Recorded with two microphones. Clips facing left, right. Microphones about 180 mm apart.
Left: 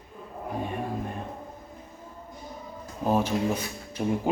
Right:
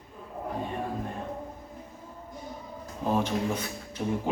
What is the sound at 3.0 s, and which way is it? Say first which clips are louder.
Speech: left 2 dB; 5° left (ahead or behind).